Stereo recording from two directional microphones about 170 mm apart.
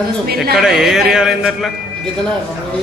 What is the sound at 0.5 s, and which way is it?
A man's voice, centre (ahead or behind).